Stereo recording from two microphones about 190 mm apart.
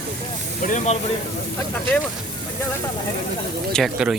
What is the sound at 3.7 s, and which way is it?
Speech, centre (ahead or behind).